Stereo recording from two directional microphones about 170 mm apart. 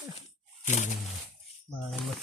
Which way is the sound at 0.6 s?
45° left (ahead or behind).